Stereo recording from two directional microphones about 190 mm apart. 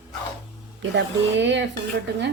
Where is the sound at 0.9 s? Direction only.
70° right (ahead or behind).